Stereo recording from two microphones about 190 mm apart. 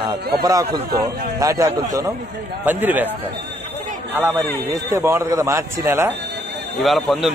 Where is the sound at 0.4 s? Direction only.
20° right (ahead or behind).